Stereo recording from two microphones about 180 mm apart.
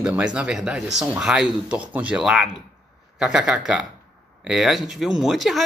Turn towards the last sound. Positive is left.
turn(degrees=0)  # may be behind; listen again after turning